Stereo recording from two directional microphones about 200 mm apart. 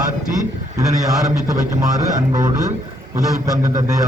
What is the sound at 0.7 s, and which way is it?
A man's voice, 15° right (ahead or behind).